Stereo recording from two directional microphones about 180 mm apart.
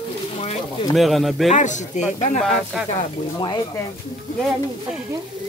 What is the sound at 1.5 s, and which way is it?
Speech, 45° left (ahead or behind).